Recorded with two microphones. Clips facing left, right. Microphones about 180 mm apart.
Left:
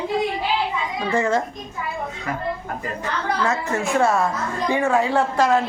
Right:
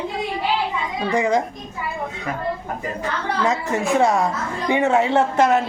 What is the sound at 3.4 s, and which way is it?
A woman's voice, 15° right (ahead or behind).